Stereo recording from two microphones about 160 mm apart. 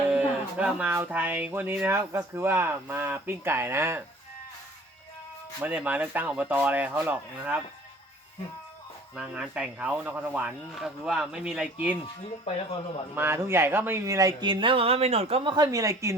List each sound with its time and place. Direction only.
0.1 s speech: 5° right (ahead or behind)
5.6 s speech: 10° right (ahead or behind)
9.1 s speech: 5° right (ahead or behind)
13.1 s speech: 15° right (ahead or behind); by 15.5 s 40° right (ahead or behind)
15.5 s speech: 25° right (ahead or behind)